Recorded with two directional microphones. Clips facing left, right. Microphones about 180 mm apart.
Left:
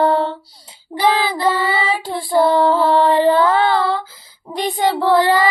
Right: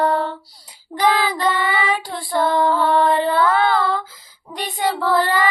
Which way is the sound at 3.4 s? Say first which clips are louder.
Left 2 dB; 30° left (ahead or behind).